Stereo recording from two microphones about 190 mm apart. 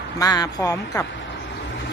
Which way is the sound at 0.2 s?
20° left (ahead or behind).